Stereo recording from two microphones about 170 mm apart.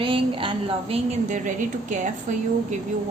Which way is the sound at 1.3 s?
45° right (ahead or behind).